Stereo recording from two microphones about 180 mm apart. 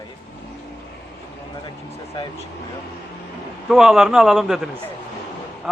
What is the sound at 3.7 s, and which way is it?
A man's voice, centre (ahead or behind).